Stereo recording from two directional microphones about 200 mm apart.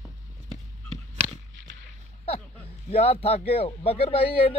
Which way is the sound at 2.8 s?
30° left (ahead or behind).